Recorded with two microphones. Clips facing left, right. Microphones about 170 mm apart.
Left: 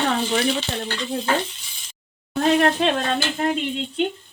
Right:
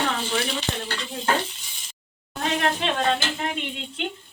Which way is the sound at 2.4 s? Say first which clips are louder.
Left 7 dB; 40° left (ahead or behind).